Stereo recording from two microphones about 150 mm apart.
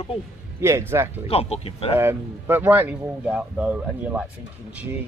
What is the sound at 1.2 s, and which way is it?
Speech, 40° left (ahead or behind).